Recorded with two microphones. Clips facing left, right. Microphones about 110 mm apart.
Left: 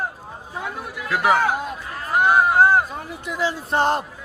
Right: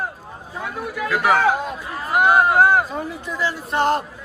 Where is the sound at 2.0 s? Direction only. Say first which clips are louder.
Right 1 dB; 5° right (ahead or behind).